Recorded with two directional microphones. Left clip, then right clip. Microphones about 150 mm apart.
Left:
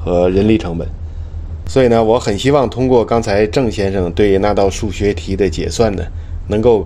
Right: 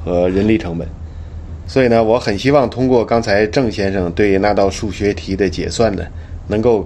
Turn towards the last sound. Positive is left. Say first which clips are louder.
# left 2 dB
turn(degrees=30)  # may be behind; listen again after turning